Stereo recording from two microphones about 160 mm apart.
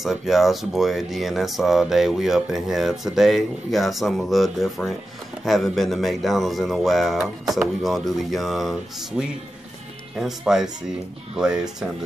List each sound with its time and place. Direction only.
0.0 s speech: centre (ahead or behind)